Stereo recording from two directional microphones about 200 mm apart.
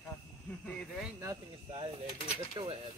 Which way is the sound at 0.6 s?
5° left (ahead or behind).